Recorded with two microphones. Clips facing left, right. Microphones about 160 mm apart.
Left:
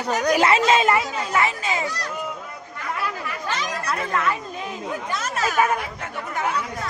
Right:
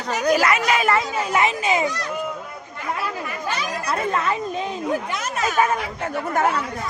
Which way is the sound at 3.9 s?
25° right (ahead or behind).